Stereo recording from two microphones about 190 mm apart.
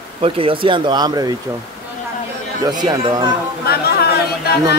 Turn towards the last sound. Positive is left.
turn(degrees=55)  # may be behind; listen again after turning